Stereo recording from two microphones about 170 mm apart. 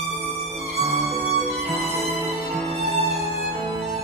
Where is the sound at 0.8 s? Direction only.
35° right (ahead or behind).